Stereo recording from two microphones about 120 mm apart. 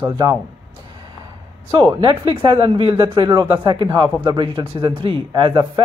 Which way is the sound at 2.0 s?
45° right (ahead or behind).